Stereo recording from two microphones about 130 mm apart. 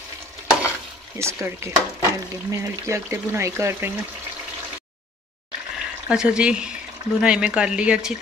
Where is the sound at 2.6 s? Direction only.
20° right (ahead or behind).